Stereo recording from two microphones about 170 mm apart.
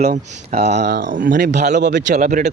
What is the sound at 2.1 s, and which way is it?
Speech, 50° right (ahead or behind).